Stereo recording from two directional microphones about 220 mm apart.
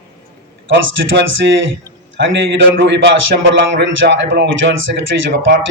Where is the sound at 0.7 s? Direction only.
55° right (ahead or behind).